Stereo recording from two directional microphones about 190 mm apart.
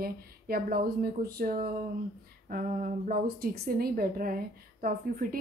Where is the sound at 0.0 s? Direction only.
50° right (ahead or behind).